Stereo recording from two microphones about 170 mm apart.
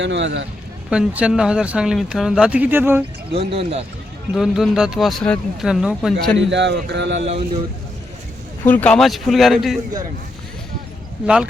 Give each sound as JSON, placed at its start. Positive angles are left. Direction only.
{"t": 0.0, "sound": "speech", "side_deg": -90}
{"t": 0.9, "sound": "speech", "side_deg": -5}
{"t": 3.3, "sound": "speech", "side_deg": -35}
{"t": 4.4, "sound": "speech", "side_deg": 0}
{"t": 6.3, "sound": "speech", "side_deg": -90}
{"t": 8.6, "sound": "speech", "side_deg": 10}